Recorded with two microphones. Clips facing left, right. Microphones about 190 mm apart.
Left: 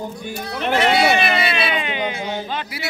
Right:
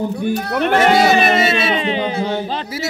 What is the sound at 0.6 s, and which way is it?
A woman's voice, 50° right (ahead or behind).